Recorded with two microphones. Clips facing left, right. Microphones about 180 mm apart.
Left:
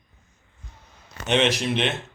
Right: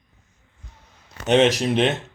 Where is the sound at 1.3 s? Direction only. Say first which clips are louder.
Right 5 dB; 40° right (ahead or behind).